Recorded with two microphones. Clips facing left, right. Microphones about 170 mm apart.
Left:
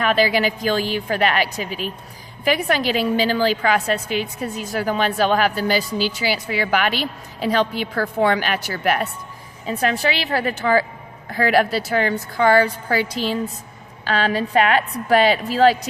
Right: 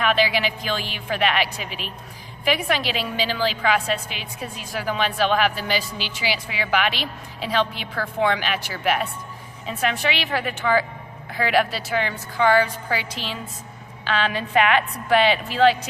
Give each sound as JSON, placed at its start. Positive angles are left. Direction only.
{"t": 0.0, "sound": "a woman's voice", "side_deg": 40}